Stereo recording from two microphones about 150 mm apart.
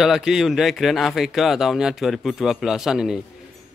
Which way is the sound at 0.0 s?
Centre (ahead or behind).